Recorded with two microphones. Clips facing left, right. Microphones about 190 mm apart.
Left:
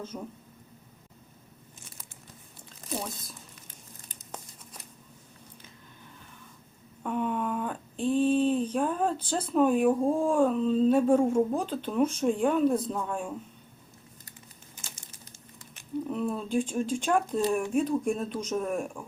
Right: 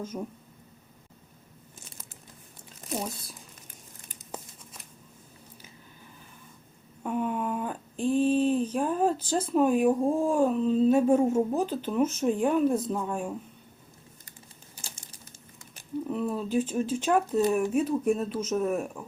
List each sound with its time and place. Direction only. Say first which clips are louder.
0.0 s speech: right 3 dB; 10° right (ahead or behind)
7.0 s speech: even; 5° right (ahead or behind)
14.8 s crumpling: right 2 dB; 30° right (ahead or behind)
16.0 s speech: right 2 dB; 5° right (ahead or behind)